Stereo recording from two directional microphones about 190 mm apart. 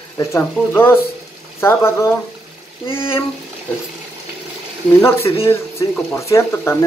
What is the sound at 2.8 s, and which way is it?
Speech, 25° left (ahead or behind).